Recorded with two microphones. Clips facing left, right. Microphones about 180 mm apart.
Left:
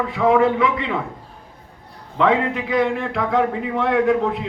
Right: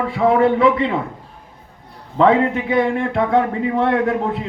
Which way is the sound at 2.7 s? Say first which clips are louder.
Right 2 dB; 25° right (ahead or behind).